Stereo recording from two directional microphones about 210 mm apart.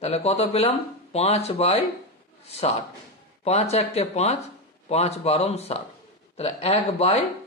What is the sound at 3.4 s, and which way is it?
A man's voice, 30° left (ahead or behind).